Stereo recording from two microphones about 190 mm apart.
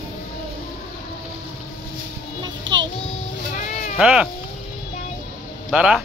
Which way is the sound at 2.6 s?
75° right (ahead or behind).